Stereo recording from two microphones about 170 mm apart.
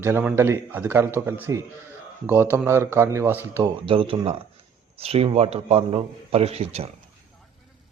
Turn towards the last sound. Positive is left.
turn(degrees=-35)  # may be behind; listen again after turning